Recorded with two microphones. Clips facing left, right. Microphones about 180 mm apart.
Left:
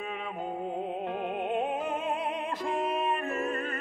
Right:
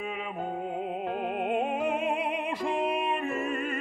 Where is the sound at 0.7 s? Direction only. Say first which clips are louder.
Right 1 dB; 5° right (ahead or behind).